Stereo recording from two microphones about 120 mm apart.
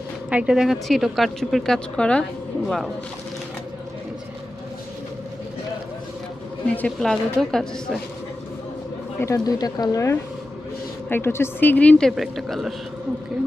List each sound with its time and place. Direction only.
0.3 s speech: 10° right (ahead or behind)
6.7 s speech: 5° left (ahead or behind)
9.2 s a woman's voice: 30° left (ahead or behind); by 12.7 s centre (ahead or behind)